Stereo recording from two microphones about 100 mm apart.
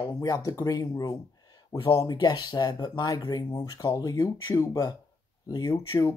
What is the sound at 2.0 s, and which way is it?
Speech, 45° left (ahead or behind).